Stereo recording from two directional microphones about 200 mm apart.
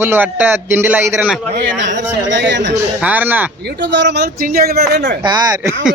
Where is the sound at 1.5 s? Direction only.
60° right (ahead or behind).